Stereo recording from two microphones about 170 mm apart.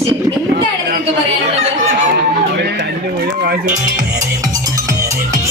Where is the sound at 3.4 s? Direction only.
65° right (ahead or behind).